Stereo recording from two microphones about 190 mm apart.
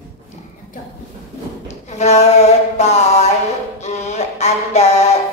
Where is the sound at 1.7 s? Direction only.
35° left (ahead or behind).